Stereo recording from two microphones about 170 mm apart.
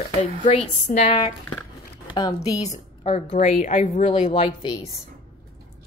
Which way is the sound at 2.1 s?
25° left (ahead or behind).